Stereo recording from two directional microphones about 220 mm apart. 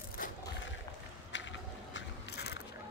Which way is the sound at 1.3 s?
55° left (ahead or behind).